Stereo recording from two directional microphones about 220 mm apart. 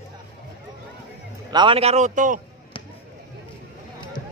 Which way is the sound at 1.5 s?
20° right (ahead or behind).